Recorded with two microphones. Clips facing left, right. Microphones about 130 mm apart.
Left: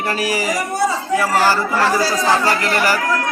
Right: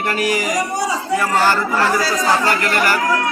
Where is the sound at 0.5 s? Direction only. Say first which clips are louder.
Left 1 dB; 15° right (ahead or behind).